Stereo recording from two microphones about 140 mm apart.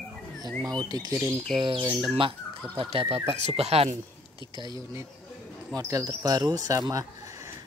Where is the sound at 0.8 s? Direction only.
25° right (ahead or behind); by 4.0 s 50° right (ahead or behind).